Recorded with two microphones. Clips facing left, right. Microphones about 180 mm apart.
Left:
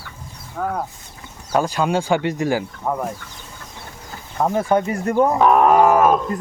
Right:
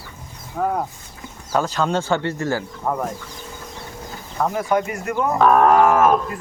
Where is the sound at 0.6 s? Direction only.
5° right (ahead or behind).